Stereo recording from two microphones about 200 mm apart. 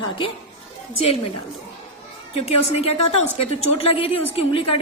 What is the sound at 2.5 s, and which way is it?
A woman's voice, 30° left (ahead or behind).